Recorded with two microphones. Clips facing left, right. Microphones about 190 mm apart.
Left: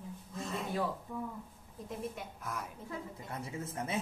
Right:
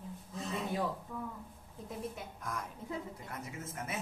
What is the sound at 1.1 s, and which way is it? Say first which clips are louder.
Speech: left 2 dB; 15° left (ahead or behind).